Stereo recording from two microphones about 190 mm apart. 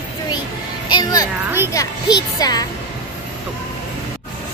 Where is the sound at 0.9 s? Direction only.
20° left (ahead or behind).